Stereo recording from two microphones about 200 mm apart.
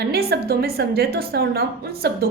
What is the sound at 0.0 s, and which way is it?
A woman's voice, 50° right (ahead or behind).